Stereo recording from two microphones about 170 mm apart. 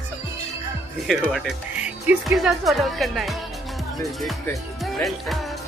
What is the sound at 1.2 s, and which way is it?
Speech, centre (ahead or behind).